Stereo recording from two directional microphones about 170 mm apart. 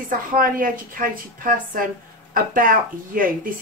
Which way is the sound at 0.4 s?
55° right (ahead or behind).